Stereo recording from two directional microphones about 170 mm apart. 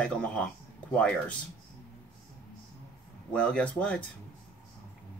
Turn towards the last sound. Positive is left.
turn(degrees=5)  # may be behind; listen again after turning